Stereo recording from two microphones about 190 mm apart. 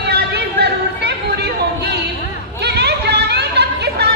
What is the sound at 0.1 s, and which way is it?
Chatter, 60° right (ahead or behind).